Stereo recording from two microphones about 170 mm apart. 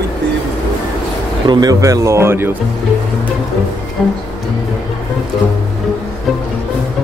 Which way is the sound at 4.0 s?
Centre (ahead or behind).